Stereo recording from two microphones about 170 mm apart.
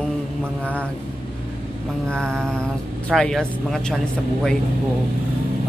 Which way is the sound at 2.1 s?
5° left (ahead or behind).